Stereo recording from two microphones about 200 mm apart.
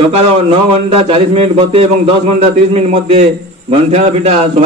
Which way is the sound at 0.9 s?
25° right (ahead or behind).